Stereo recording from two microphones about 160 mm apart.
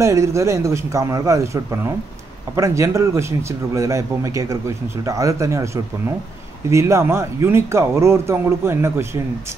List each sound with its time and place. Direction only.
0.0 s a man's voice: 20° right (ahead or behind)
6.7 s a man's voice: 15° right (ahead or behind)